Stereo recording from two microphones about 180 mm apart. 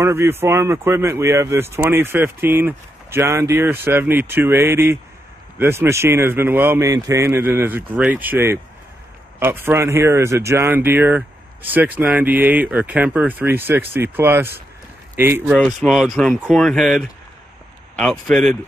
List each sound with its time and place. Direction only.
0.0 s speech: 15° right (ahead or behind)
15.5 s speech: centre (ahead or behind)